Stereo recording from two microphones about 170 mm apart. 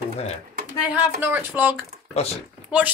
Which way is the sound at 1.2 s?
10° right (ahead or behind).